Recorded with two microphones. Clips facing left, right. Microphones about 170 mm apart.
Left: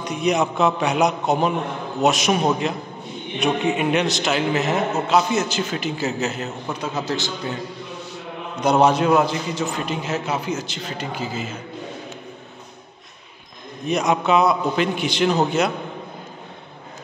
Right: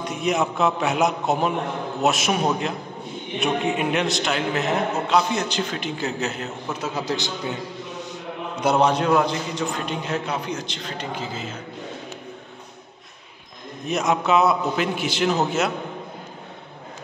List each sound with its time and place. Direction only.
0.0 s a man's voice: centre (ahead or behind)
6.9 s a man's voice: 10° right (ahead or behind)
8.8 s a man's voice: 5° left (ahead or behind)
13.8 s a man's voice: centre (ahead or behind)